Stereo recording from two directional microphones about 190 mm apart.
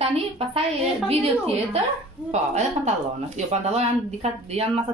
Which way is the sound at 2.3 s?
35° right (ahead or behind).